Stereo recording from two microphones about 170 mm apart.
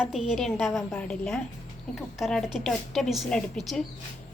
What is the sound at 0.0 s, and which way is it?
A woman's voice, centre (ahead or behind).